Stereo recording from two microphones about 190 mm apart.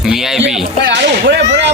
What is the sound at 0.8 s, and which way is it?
Speech, 60° right (ahead or behind).